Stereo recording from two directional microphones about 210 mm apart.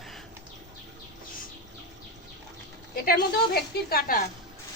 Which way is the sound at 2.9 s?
45° left (ahead or behind).